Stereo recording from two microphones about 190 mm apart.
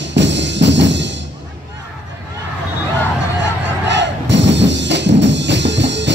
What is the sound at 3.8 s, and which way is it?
Music, 70° right (ahead or behind).